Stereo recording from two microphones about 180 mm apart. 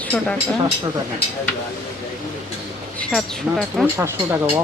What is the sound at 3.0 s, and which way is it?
Speech, centre (ahead or behind).